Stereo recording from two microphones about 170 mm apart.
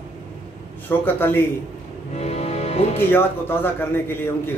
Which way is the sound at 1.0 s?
10° left (ahead or behind).